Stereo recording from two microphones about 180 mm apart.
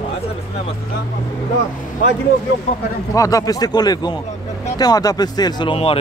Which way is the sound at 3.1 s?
20° left (ahead or behind).